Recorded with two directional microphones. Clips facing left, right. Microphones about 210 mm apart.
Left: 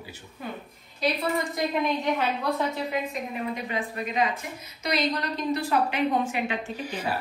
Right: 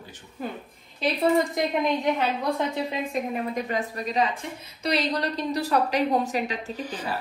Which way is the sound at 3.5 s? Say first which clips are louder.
Right 3 dB; 40° right (ahead or behind).